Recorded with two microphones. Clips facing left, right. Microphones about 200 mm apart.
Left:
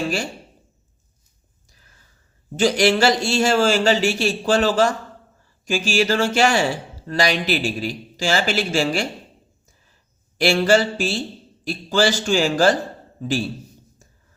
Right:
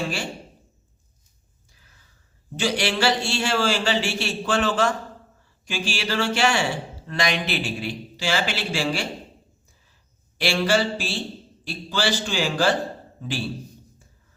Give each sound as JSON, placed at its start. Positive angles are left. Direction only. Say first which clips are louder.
{"t": 2.6, "sound": "speech", "louder": "left 7 dB", "side_deg": 45}
{"t": 10.3, "sound": "speech", "louder": "left 5 dB", "side_deg": 45}